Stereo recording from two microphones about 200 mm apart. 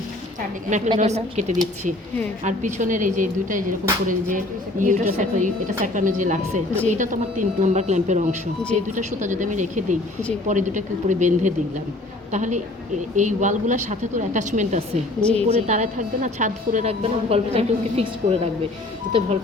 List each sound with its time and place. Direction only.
0.9 s speech: 35° right (ahead or behind)
15.2 s a woman's voice: 5° left (ahead or behind)
15.4 s speech: 35° right (ahead or behind)